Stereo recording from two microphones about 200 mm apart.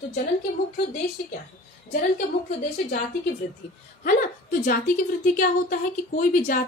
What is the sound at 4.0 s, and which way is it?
A woman's voice, 45° left (ahead or behind).